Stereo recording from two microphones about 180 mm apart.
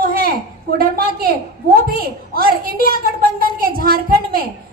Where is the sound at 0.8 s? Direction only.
55° right (ahead or behind).